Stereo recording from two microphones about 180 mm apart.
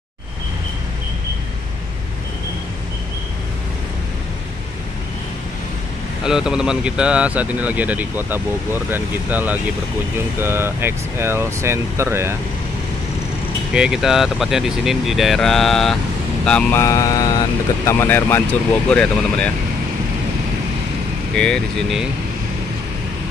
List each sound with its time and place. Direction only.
6.2 s speech: 5° right (ahead or behind)
13.7 s speech: 5° right (ahead or behind)
16.8 s speech: 20° left (ahead or behind)
21.4 s speech: centre (ahead or behind)